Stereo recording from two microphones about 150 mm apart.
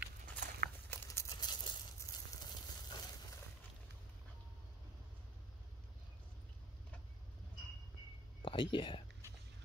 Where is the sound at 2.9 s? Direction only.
25° left (ahead or behind).